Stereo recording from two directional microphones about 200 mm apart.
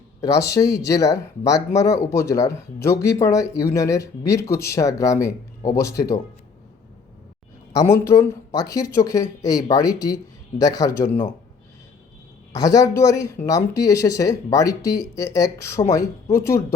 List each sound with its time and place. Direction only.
0.3 s speech: 15° left (ahead or behind)
7.8 s speech: 15° left (ahead or behind)
12.5 s speech: 15° left (ahead or behind)